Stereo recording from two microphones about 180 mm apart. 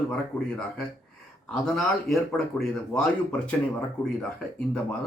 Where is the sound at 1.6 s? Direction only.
Centre (ahead or behind).